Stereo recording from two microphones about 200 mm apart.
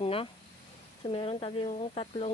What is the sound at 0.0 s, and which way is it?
Speech, 25° left (ahead or behind).